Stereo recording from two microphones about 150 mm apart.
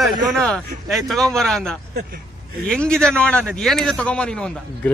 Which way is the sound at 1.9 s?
90° right.